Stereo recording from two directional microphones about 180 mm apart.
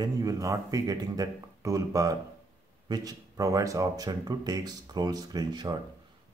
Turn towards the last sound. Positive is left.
turn(degrees=-25)  # may be behind; listen again after turning